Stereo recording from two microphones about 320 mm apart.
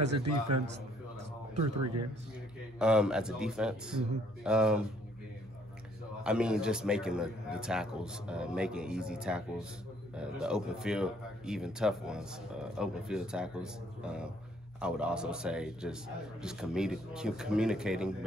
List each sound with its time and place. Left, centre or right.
0.1 s a man's voice: right
2.8 s speech: centre
6.2 s speech: centre